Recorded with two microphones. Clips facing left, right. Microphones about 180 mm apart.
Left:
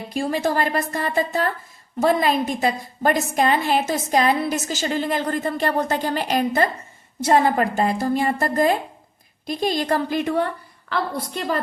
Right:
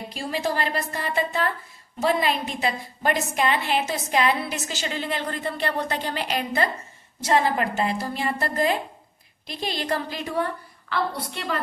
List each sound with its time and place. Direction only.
0.1 s a woman's voice: 50° left (ahead or behind)
11.3 s a woman's voice: 40° left (ahead or behind)